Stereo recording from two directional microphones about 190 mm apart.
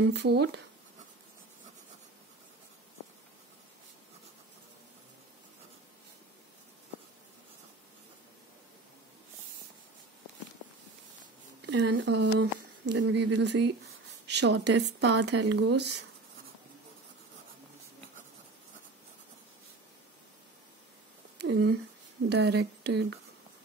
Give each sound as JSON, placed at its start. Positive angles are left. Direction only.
{"t": 0.0, "sound": "speech", "side_deg": -65}
{"t": 11.6, "sound": "speech", "side_deg": -70}
{"t": 21.4, "sound": "speech", "side_deg": -70}